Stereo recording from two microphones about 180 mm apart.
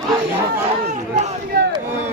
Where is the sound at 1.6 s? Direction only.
65° right (ahead or behind).